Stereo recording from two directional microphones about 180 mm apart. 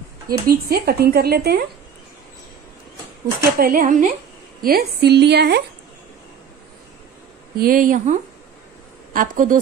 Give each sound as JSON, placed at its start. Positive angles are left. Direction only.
{"t": 0.3, "sound": "speech", "side_deg": -55}
{"t": 3.5, "sound": "speech", "side_deg": -50}
{"t": 4.6, "sound": "speech", "side_deg": -55}
{"t": 7.5, "sound": "speech", "side_deg": -55}